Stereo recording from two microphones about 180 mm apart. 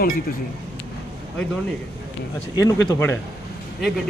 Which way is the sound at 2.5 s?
20° left (ahead or behind).